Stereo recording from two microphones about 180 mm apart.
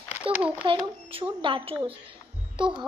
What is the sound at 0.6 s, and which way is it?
A woman's voice, 30° right (ahead or behind).